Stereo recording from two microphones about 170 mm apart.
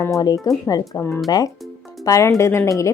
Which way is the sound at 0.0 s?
20° left (ahead or behind).